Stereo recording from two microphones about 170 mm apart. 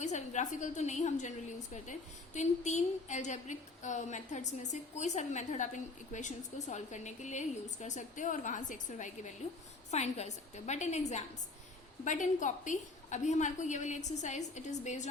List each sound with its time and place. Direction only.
0.0 s a woman's voice: 45° left (ahead or behind)